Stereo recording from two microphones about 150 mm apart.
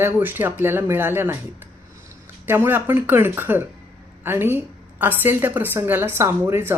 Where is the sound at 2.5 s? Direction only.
15° right (ahead or behind).